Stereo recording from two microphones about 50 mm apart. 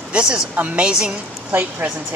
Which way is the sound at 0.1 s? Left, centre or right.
Centre.